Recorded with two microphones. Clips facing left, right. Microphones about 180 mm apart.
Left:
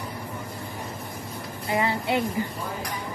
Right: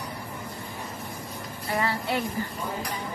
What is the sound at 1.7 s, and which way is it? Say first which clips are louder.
Speech: left 3 dB; 20° left (ahead or behind).